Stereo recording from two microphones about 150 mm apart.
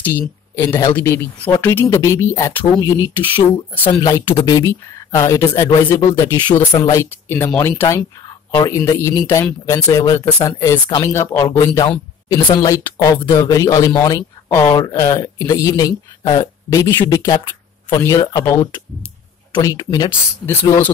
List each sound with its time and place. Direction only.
0.6 s speech: 20° left (ahead or behind)
14.5 s speech: 15° left (ahead or behind)
20.4 s speech: 15° left (ahead or behind)